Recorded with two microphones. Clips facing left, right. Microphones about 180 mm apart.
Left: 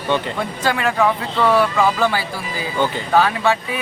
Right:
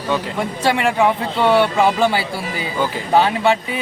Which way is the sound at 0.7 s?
20° right (ahead or behind).